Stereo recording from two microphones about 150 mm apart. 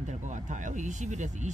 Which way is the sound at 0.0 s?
55° right (ahead or behind).